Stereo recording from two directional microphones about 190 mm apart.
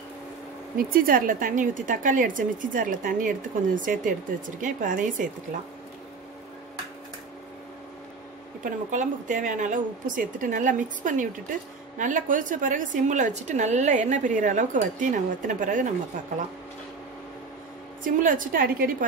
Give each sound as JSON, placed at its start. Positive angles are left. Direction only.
{"t": 0.7, "sound": "a woman's voice", "side_deg": -50}
{"t": 8.6, "sound": "a woman's voice", "side_deg": -40}
{"t": 18.0, "sound": "a woman's voice", "side_deg": -45}